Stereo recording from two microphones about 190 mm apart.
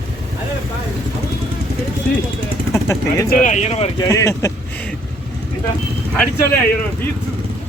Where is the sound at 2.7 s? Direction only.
15° left (ahead or behind).